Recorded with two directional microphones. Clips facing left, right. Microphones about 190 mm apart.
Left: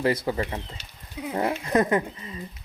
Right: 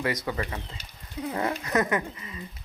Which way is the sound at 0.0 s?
30° left (ahead or behind).